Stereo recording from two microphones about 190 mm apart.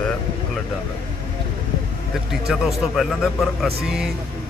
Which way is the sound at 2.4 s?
Centre (ahead or behind).